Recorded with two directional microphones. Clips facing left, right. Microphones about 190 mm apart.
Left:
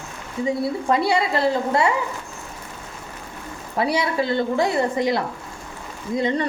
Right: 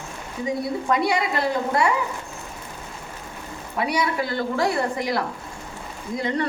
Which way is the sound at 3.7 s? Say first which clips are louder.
Left 2 dB; 30° left (ahead or behind).